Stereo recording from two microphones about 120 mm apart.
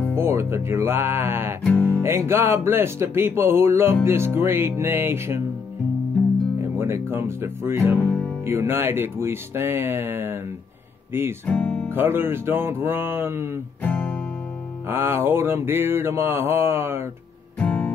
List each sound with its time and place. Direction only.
0.1 s speech: 20° right (ahead or behind)
1.6 s music: 15° left (ahead or behind)
2.0 s speech: 20° right (ahead or behind)
6.6 s speech: 20° right (ahead or behind)
8.0 s music: 15° left (ahead or behind)
8.5 s speech: 20° right (ahead or behind)
11.4 s speech: 10° left (ahead or behind)
11.9 s speech: 20° right (ahead or behind)
13.8 s guitar: 15° left (ahead or behind)
14.9 s speech: 20° right (ahead or behind)
17.6 s music: 15° left (ahead or behind)